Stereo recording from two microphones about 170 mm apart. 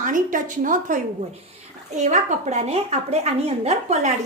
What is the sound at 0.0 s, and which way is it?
A woman's voice, 50° right (ahead or behind).